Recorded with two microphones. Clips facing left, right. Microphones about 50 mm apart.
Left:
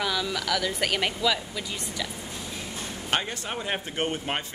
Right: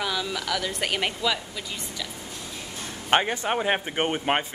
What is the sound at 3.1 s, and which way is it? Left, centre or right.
Speech, right.